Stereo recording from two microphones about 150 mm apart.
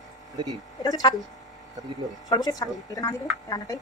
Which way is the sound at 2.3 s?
25° left (ahead or behind).